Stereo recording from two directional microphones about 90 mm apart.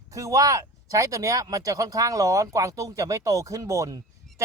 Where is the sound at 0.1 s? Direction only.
40° right (ahead or behind).